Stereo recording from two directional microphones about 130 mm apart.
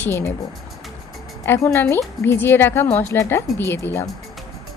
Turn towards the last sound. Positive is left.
turn(degrees=20)  # may be behind; listen again after turning